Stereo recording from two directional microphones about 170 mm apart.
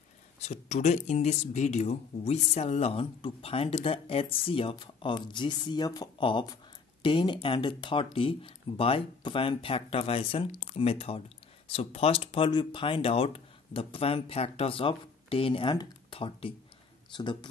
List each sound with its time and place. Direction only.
0.4 s speech: 40° left (ahead or behind)